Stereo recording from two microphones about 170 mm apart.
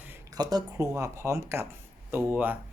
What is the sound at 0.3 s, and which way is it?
Speech, 25° right (ahead or behind).